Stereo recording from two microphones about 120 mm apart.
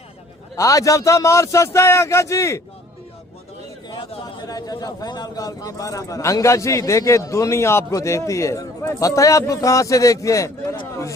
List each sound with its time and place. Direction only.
0.5 s a man's voice: 25° left (ahead or behind)
3.8 s a man's voice: 35° left (ahead or behind)